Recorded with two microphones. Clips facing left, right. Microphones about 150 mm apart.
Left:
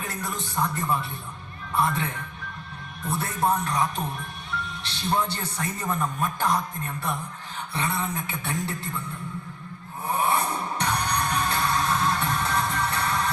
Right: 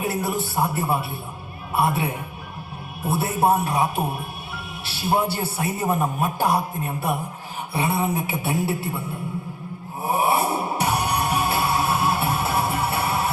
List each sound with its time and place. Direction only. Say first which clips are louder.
0.0 s speech: right 8 dB; 10° right (ahead or behind)
10.0 s music: right 4 dB; 10° right (ahead or behind)